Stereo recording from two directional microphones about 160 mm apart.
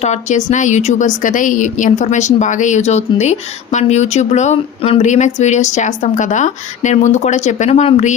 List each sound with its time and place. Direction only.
0.0 s a woman's voice: 45° left (ahead or behind)